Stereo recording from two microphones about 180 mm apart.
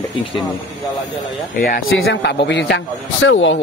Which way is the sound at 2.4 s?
75° left (ahead or behind).